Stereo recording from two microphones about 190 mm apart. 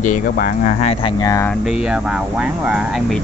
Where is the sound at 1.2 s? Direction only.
15° left (ahead or behind).